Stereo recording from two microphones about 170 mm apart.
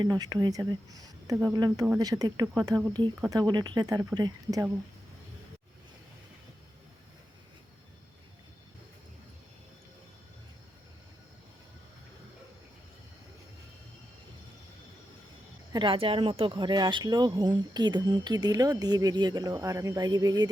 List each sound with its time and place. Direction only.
0.0 s speech: 20° right (ahead or behind)
15.7 s speech: 30° right (ahead or behind)